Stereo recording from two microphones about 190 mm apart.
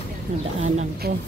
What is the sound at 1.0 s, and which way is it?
Speech, 55° right (ahead or behind).